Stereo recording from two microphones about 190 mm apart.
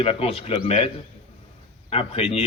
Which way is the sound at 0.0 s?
30° left (ahead or behind).